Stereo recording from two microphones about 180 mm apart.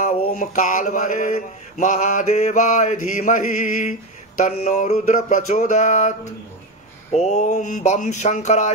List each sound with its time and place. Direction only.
0.0 s mantra: 45° left (ahead or behind)